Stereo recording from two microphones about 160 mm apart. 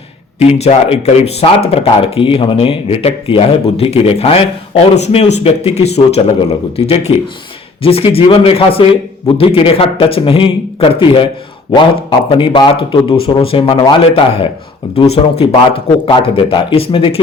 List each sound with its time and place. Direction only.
0.3 s speech: 40° left (ahead or behind)